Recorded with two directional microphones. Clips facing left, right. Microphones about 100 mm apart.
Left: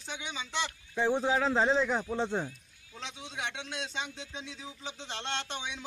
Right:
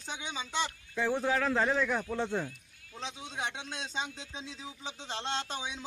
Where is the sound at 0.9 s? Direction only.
20° left (ahead or behind).